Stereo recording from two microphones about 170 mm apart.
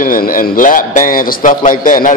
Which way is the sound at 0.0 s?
55° left (ahead or behind).